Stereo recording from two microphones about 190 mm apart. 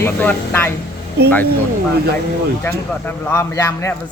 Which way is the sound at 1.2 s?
60° right (ahead or behind).